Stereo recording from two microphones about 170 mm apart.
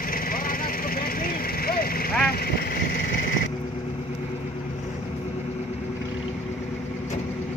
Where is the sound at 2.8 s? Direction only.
60° left (ahead or behind).